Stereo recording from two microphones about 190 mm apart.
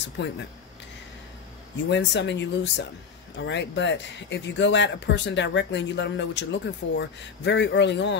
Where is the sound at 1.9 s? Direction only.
65° left (ahead or behind).